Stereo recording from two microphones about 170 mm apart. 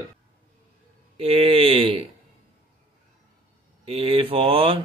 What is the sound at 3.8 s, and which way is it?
Speech, 30° right (ahead or behind).